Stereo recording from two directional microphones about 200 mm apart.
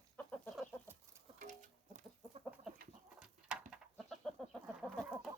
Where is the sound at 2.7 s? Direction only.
Centre (ahead or behind).